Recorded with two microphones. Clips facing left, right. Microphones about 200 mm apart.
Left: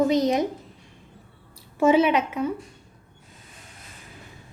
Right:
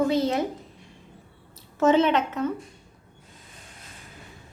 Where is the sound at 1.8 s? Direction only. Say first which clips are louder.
Left 1 dB; 10° left (ahead or behind).